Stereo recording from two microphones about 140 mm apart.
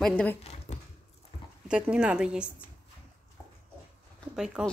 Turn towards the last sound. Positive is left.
turn(degrees=-5)  # may be behind; listen again after turning